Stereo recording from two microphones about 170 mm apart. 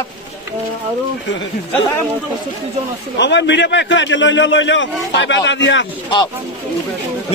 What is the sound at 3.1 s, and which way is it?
A man's voice, 90° left.